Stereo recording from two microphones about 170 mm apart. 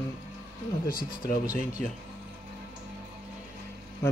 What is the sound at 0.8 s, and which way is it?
Speech, 55° left (ahead or behind).